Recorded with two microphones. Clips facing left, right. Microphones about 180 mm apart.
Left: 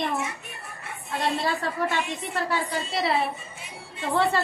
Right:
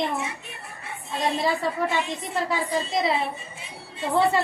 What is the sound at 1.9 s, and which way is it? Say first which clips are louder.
A woman's voice: right 2 dB; 15° right (ahead or behind).